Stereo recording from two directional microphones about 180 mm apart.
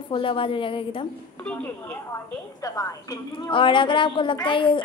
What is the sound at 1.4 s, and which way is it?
A woman's voice, 10° left (ahead or behind).